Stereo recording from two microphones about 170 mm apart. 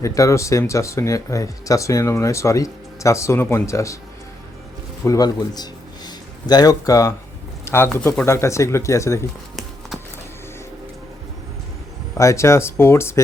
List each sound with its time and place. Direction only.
0.0 s speech: 20° left (ahead or behind)
5.0 s speech: 20° left (ahead or behind)
12.1 s speech: 15° left (ahead or behind)